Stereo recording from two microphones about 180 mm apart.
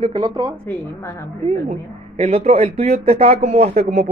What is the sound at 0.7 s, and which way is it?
Speech, 15° left (ahead or behind).